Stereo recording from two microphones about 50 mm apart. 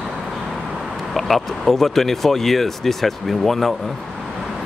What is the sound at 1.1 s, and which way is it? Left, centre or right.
Speech, centre.